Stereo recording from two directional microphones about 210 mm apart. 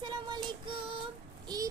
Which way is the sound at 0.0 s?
20° right (ahead or behind).